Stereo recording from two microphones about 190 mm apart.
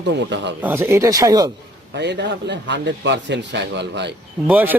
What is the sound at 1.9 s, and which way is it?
A man's voice, 65° right (ahead or behind).